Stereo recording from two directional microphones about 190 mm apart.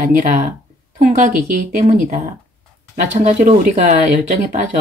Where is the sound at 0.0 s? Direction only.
45° right (ahead or behind).